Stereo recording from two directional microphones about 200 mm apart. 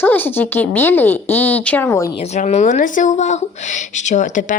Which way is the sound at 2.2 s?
35° left (ahead or behind).